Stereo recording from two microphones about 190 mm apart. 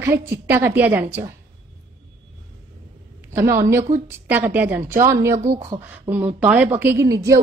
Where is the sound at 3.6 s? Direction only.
15° right (ahead or behind).